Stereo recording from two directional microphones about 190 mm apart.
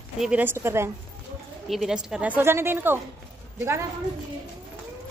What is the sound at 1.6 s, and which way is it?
Speech, centre (ahead or behind).